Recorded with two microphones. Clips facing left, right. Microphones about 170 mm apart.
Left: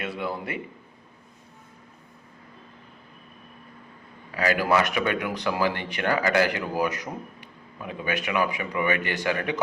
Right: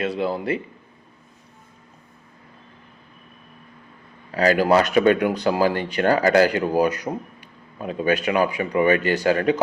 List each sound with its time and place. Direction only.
0.0 s a man's voice: 25° right (ahead or behind)
4.3 s speech: 35° right (ahead or behind)